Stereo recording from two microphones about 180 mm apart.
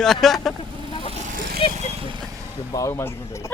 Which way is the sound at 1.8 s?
30° right (ahead or behind).